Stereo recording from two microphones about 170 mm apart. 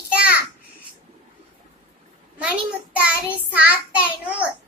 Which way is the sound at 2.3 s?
10° right (ahead or behind).